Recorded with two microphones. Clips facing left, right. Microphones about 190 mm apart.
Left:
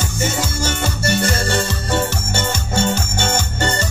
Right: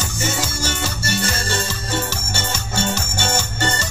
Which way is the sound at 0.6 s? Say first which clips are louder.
Left 4 dB; 55° left (ahead or behind).